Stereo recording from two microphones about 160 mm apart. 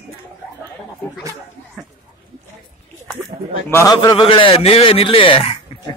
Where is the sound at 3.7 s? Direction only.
20° left (ahead or behind).